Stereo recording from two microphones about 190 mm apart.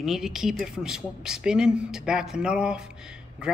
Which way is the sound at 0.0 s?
Centre (ahead or behind).